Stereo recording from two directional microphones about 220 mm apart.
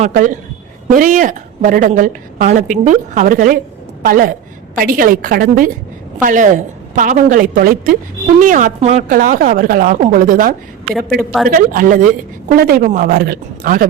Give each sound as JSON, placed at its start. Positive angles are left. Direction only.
{"t": 0.0, "sound": "a woman's voice", "side_deg": -35}
{"t": 10.9, "sound": "a woman's voice", "side_deg": 0}
{"t": 11.4, "sound": "a woman's voice", "side_deg": -40}